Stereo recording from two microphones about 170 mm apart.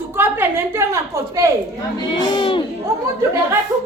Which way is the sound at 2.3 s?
30° left (ahead or behind).